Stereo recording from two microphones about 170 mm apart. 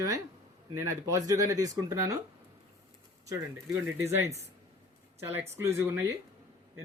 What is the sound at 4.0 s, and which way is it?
Speech, 15° right (ahead or behind).